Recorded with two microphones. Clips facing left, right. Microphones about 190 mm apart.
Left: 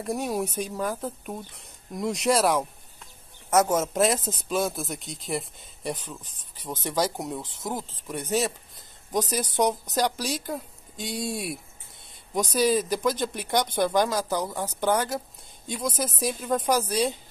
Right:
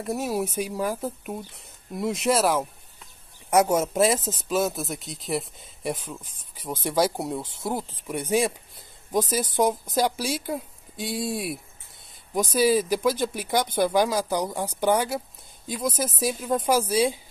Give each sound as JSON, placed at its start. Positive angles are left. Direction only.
{"t": 0.0, "sound": "speech", "side_deg": 0}
{"t": 3.4, "sound": "speech", "side_deg": -10}